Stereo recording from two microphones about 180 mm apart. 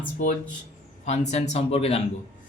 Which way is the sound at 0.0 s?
50° left (ahead or behind).